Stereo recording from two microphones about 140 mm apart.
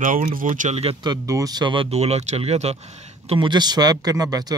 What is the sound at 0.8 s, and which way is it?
Speech, 40° right (ahead or behind).